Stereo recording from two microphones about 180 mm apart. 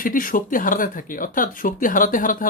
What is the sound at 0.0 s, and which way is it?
Speech, 50° left (ahead or behind).